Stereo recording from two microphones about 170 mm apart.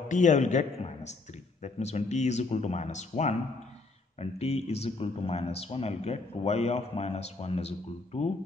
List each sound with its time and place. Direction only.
0.1 s speech: 45° left (ahead or behind)